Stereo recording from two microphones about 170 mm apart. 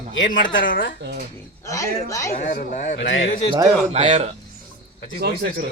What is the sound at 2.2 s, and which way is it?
Speech, 45° left (ahead or behind).